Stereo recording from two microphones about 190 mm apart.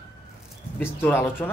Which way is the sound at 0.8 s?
10° left (ahead or behind).